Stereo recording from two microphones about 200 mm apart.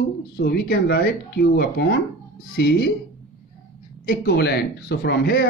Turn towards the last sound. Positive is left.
turn(degrees=55)  # may be behind; listen again after turning